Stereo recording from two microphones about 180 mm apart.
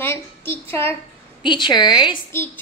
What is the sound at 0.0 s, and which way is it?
Child singing, 10° left (ahead or behind).